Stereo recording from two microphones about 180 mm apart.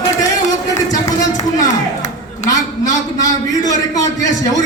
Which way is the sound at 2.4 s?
20° left (ahead or behind).